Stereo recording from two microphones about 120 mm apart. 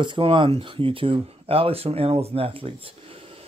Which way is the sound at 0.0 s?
45° right (ahead or behind).